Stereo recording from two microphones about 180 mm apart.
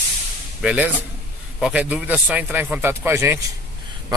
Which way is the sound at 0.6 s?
5° right (ahead or behind).